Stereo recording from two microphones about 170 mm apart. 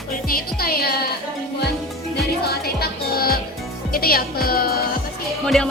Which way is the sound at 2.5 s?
65° left (ahead or behind).